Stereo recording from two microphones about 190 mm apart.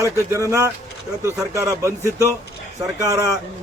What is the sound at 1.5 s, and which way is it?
Speech, 15° right (ahead or behind).